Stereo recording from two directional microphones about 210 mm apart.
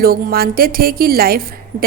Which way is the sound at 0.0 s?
45° right (ahead or behind).